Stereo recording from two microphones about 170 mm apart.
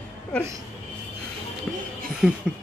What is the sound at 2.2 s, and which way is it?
Speech, 5° right (ahead or behind).